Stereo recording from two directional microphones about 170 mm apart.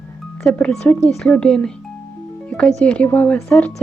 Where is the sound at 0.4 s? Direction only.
5° left (ahead or behind).